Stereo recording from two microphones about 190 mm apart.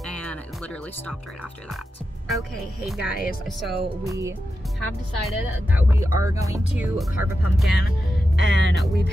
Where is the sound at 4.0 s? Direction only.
15° right (ahead or behind).